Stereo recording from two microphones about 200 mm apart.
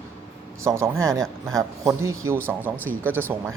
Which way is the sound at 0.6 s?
15° right (ahead or behind).